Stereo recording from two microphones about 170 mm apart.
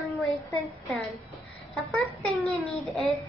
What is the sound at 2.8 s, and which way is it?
Child singing, centre (ahead or behind).